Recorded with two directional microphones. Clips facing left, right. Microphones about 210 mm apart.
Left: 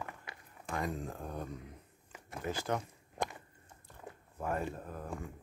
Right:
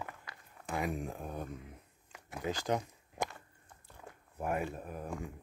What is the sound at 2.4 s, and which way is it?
Speech, 15° right (ahead or behind).